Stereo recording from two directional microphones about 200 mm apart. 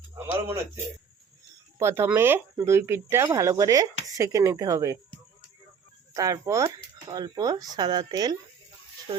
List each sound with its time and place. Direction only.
0.4 s speech: 15° right (ahead or behind)
1.8 s speech: 10° right (ahead or behind)
6.1 s speech: 15° right (ahead or behind)